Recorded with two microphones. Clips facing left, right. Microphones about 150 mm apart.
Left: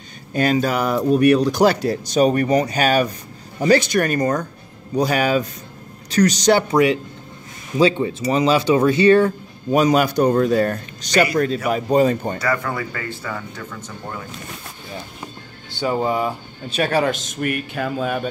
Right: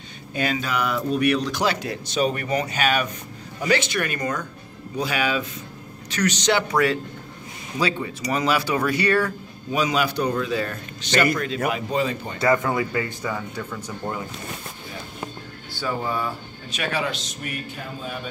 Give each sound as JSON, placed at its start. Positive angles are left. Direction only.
{"t": 0.3, "sound": "speech", "side_deg": 40}
{"t": 6.7, "sound": "speech", "side_deg": 20}
{"t": 9.7, "sound": "a man's voice", "side_deg": 45}
{"t": 12.4, "sound": "speech", "side_deg": -20}
{"t": 15.8, "sound": "speech", "side_deg": 25}
{"t": 16.7, "sound": "a man's voice", "side_deg": 40}